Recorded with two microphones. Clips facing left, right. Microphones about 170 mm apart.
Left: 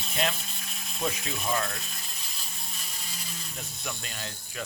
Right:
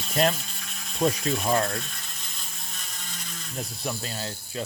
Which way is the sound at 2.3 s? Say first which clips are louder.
Right 1 dB; 5° left (ahead or behind).